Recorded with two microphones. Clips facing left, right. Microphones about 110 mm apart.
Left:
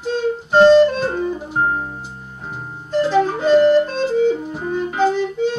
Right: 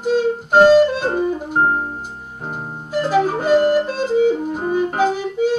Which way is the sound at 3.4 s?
45° right (ahead or behind).